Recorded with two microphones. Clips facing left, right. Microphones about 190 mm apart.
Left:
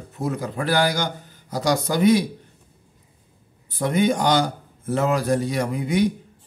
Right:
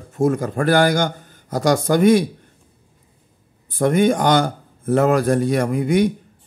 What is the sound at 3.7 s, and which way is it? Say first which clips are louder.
Speech: right 4 dB; 50° right (ahead or behind).